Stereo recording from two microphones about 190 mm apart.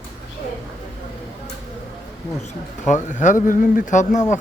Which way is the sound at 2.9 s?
40° left (ahead or behind).